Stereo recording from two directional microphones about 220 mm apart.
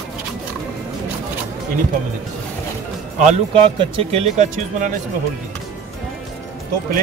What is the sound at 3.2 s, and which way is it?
Speech, 25° right (ahead or behind).